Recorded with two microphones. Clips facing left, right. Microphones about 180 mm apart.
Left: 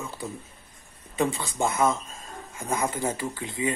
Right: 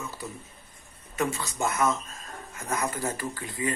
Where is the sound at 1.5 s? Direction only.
25° left (ahead or behind).